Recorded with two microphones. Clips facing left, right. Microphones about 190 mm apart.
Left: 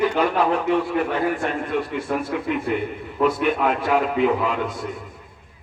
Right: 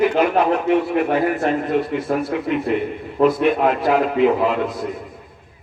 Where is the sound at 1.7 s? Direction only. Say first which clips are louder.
Right 5 dB; 40° right (ahead or behind).